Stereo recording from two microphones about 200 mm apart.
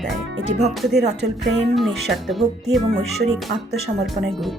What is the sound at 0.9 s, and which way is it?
Speech, 60° right (ahead or behind).